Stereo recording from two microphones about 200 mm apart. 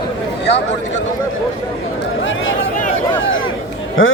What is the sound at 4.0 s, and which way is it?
Speech, 75° left (ahead or behind).